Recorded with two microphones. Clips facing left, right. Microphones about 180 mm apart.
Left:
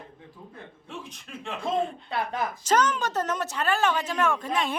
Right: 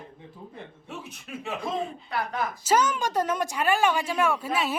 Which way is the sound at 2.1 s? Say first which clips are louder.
Right 3 dB; 25° left (ahead or behind).